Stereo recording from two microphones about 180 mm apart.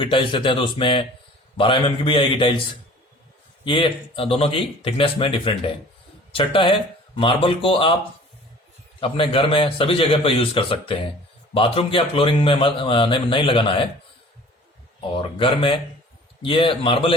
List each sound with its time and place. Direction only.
0.0 s a man's voice: 30° left (ahead or behind)
3.6 s a man's voice: 25° left (ahead or behind)
9.0 s a man's voice: 30° left (ahead or behind)
15.1 s a man's voice: 30° left (ahead or behind)